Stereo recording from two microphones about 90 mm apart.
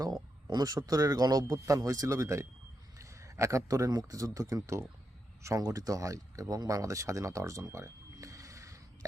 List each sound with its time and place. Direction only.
0.5 s a man's voice: 40° right (ahead or behind)